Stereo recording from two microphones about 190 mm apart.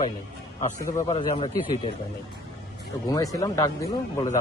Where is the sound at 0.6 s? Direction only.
40° left (ahead or behind).